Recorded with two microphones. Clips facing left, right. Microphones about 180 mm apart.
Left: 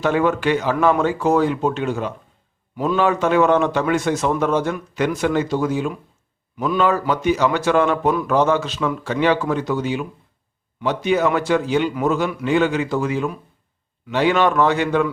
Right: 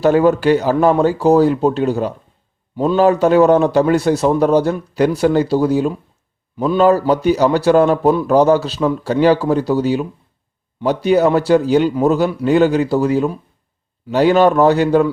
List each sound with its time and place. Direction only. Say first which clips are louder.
0.0 s a man's voice: right 6 dB; 35° right (ahead or behind)